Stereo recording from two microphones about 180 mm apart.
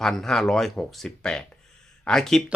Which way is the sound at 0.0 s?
Centre (ahead or behind).